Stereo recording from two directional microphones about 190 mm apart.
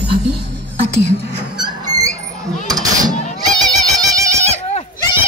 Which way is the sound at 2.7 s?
20° right (ahead or behind).